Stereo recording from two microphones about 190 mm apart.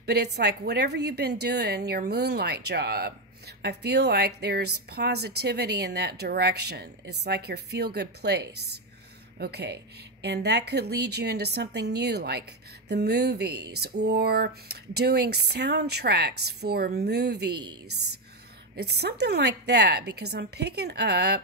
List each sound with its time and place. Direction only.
0.0 s a woman's voice: 60° right (ahead or behind)
18.8 s a woman's voice: 60° right (ahead or behind)